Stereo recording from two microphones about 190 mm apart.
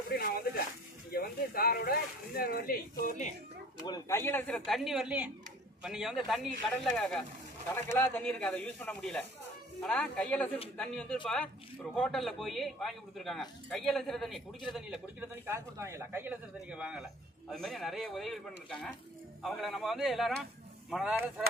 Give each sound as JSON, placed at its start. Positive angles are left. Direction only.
{"t": 1.1, "sound": "speech", "side_deg": 50}
{"t": 3.8, "sound": "a man's voice", "side_deg": 15}